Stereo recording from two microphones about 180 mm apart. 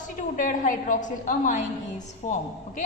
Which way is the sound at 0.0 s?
45° left (ahead or behind).